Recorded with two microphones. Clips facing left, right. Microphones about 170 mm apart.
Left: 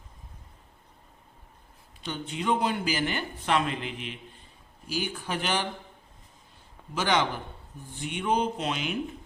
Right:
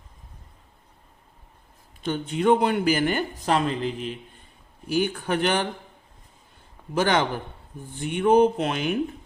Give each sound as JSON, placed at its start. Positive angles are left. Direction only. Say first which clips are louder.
{"t": 2.0, "sound": "speech", "louder": "right 8 dB", "side_deg": -50}
{"t": 4.9, "sound": "speech", "louder": "right 8 dB", "side_deg": -55}
{"t": 6.9, "sound": "speech", "louder": "right 4 dB", "side_deg": -50}